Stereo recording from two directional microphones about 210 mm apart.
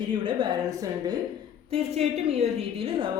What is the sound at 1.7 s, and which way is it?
Speech, 30° right (ahead or behind).